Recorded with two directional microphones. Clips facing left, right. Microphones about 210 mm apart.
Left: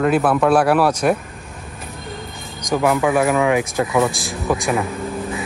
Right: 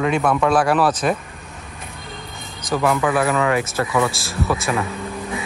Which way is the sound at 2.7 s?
10° left (ahead or behind).